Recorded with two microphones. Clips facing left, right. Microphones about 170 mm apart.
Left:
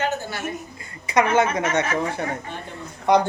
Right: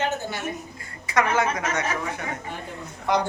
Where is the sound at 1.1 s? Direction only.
20° left (ahead or behind).